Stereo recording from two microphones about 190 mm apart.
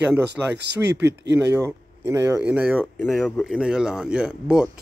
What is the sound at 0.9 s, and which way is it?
Speech, 65° right (ahead or behind).